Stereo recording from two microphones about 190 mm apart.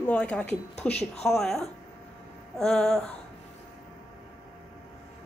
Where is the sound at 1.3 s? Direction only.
Centre (ahead or behind).